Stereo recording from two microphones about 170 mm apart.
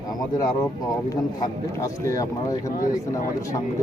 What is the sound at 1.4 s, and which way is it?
A man's voice, 20° left (ahead or behind).